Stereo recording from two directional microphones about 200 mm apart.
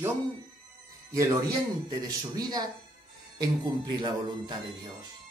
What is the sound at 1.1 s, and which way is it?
Speech, 15° right (ahead or behind).